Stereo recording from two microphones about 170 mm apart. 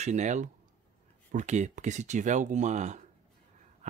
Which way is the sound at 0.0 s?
45° right (ahead or behind).